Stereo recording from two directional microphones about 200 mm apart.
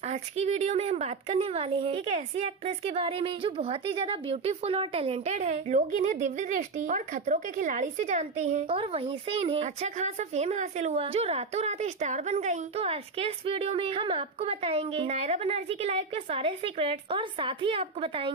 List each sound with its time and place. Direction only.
0.1 s speech: 35° right (ahead or behind)